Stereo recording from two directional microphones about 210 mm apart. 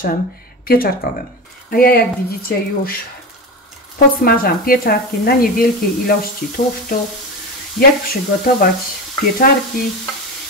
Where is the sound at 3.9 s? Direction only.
45° left (ahead or behind).